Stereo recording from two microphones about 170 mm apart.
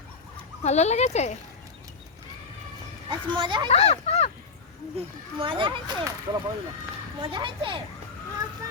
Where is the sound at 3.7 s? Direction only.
40° left (ahead or behind).